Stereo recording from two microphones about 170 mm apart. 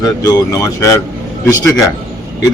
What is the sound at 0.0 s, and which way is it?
A man's voice, 20° left (ahead or behind).